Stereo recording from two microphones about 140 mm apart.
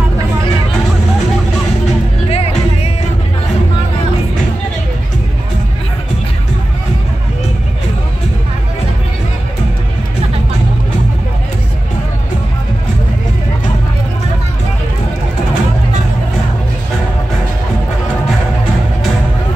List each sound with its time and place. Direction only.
2.2 s music: 45° left (ahead or behind)